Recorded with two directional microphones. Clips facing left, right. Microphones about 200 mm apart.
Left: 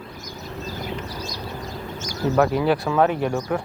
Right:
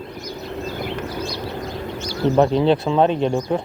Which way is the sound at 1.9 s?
45° left (ahead or behind).